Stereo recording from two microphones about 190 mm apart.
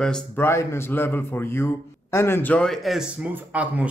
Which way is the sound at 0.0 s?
5° left (ahead or behind).